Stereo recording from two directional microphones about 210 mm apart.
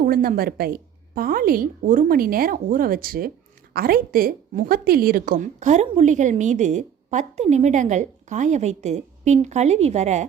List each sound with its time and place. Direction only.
0.0 s a woman's voice: 45° right (ahead or behind)